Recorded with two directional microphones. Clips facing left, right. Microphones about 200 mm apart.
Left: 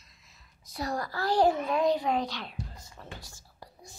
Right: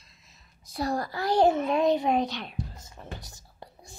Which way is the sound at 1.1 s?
20° right (ahead or behind).